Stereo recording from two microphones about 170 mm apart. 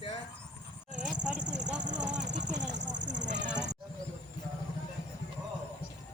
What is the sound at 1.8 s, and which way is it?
Speech, 45° right (ahead or behind).